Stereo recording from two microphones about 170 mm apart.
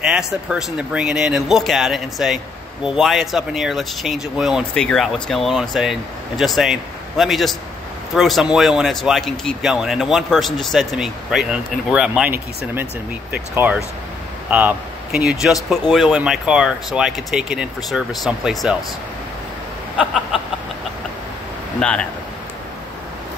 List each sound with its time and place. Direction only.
0.1 s speech: 5° right (ahead or behind)
21.7 s speech: 5° left (ahead or behind)